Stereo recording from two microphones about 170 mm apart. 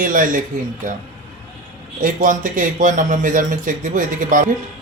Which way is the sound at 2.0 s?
50° right (ahead or behind).